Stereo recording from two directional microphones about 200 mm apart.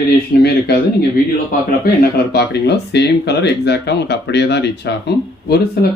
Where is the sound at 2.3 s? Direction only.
55° left (ahead or behind).